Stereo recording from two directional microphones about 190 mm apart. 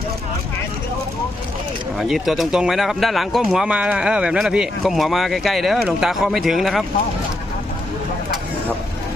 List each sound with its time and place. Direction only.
2.0 s speech: centre (ahead or behind)